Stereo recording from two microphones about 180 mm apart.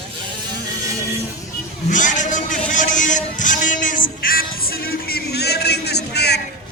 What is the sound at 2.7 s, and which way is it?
Music, 45° left (ahead or behind).